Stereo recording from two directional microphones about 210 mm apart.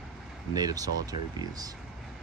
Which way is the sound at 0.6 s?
15° right (ahead or behind).